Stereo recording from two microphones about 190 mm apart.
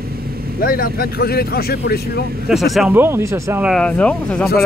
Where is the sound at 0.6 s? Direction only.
50° left (ahead or behind).